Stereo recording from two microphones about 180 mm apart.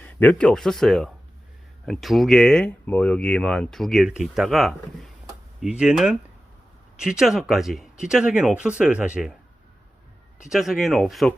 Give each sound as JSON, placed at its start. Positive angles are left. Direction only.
{"t": 0.0, "sound": "speech", "side_deg": 10}
{"t": 10.5, "sound": "speech", "side_deg": 0}